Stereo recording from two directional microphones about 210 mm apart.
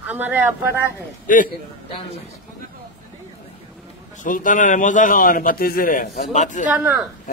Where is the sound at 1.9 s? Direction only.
25° left (ahead or behind).